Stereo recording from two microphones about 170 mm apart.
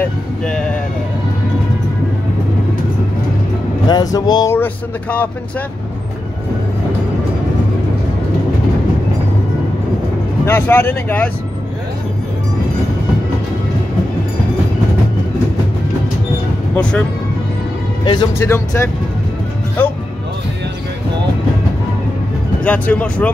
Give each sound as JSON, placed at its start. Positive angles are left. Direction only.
{"t": 0.0, "sound": "vehicle", "side_deg": 5}
{"t": 3.9, "sound": "speech", "side_deg": 25}
{"t": 10.4, "sound": "speech", "side_deg": 15}
{"t": 16.7, "sound": "speech", "side_deg": 5}
{"t": 18.0, "sound": "speech", "side_deg": 25}
{"t": 18.4, "sound": "speech", "side_deg": 15}
{"t": 22.6, "sound": "speech", "side_deg": 10}